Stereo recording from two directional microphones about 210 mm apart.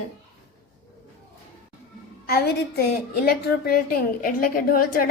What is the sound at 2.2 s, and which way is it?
A woman's voice, 45° left (ahead or behind).